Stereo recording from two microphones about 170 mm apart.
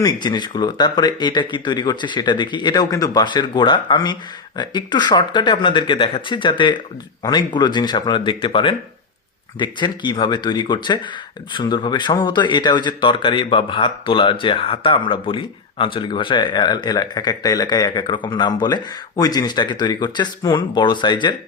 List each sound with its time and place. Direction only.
0.0 s speech: 25° left (ahead or behind)